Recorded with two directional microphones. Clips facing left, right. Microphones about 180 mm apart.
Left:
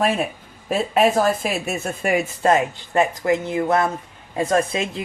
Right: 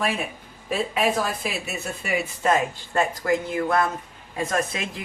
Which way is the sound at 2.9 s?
20° left (ahead or behind).